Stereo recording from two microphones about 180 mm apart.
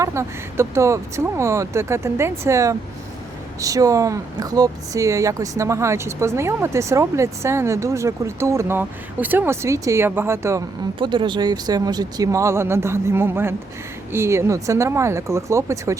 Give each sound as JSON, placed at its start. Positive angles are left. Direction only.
{"t": 0.0, "sound": "speech", "side_deg": -15}
{"t": 11.0, "sound": "speech", "side_deg": -25}